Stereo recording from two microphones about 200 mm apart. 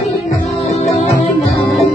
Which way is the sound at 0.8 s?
35° left (ahead or behind).